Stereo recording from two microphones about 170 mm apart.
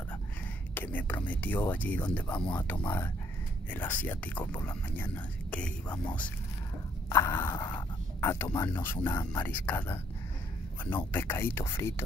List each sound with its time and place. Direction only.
0.7 s speech: 10° left (ahead or behind)
11.1 s speech: 10° left (ahead or behind)